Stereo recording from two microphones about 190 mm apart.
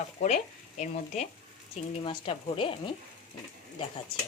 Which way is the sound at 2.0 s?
25° left (ahead or behind).